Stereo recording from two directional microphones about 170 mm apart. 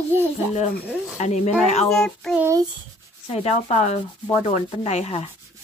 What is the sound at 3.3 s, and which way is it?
Speech, 40° left (ahead or behind).